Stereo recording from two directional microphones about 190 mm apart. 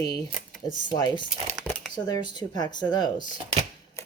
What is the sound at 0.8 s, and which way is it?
Speech, 25° left (ahead or behind).